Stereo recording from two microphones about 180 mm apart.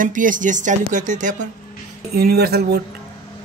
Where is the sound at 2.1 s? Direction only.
60° right (ahead or behind).